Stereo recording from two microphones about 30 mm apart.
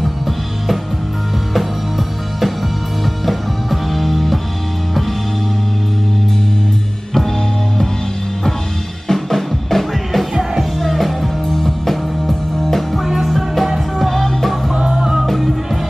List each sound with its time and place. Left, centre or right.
3.3 s music: centre
9.0 s music: centre
14.1 s music: centre
14.8 s music: right
15.2 s music: centre